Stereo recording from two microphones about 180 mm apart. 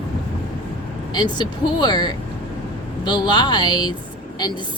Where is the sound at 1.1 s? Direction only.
25° left (ahead or behind).